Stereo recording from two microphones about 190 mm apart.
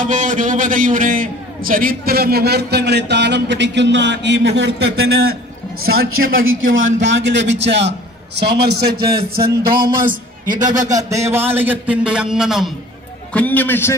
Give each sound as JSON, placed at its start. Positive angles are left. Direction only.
{"t": 0.0, "sound": "a man's voice", "side_deg": -45}
{"t": 5.8, "sound": "a man's voice", "side_deg": -90}
{"t": 10.9, "sound": "a man's voice", "side_deg": -15}